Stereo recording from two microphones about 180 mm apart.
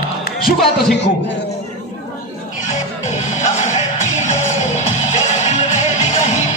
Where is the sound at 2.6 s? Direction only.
40° left (ahead or behind).